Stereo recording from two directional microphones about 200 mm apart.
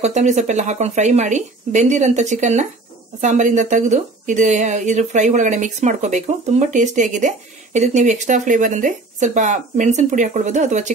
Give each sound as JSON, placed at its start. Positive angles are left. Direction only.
{"t": 0.0, "sound": "speech", "side_deg": -35}